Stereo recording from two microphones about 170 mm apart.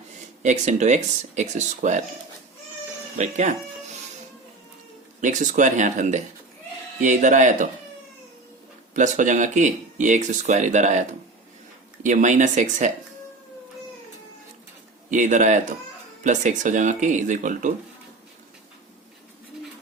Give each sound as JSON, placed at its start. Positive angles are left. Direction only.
{"t": 0.4, "sound": "speech", "side_deg": -45}
{"t": 3.2, "sound": "speech", "side_deg": -45}
{"t": 5.2, "sound": "speech", "side_deg": -45}
{"t": 8.9, "sound": "speech", "side_deg": -45}
{"t": 12.0, "sound": "speech", "side_deg": -45}
{"t": 15.1, "sound": "speech", "side_deg": -45}